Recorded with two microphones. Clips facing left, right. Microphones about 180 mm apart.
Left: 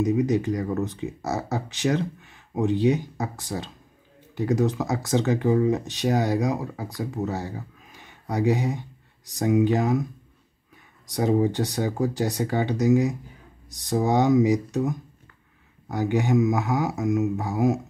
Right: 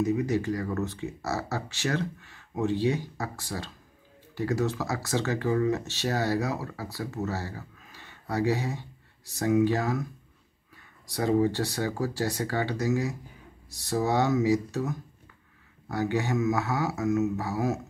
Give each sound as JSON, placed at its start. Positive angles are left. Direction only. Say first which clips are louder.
{"t": 0.0, "sound": "speech", "louder": "left 4 dB", "side_deg": 20}
{"t": 11.1, "sound": "speech", "louder": "left 2 dB", "side_deg": 20}